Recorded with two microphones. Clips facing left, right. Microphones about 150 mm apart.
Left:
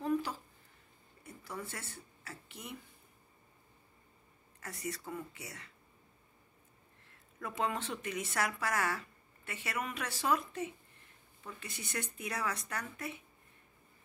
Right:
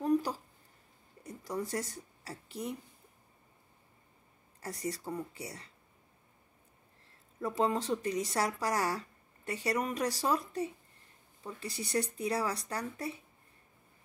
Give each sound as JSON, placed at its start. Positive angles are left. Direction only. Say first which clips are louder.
{"t": 0.0, "sound": "a sound", "louder": "right 4 dB", "side_deg": -40}
{"t": 1.2, "sound": "speech", "louder": "right 7 dB", "side_deg": -40}
{"t": 4.6, "sound": "speech", "louder": "right 4 dB", "side_deg": -35}
{"t": 7.3, "sound": "speech", "louder": "right 5 dB", "side_deg": -35}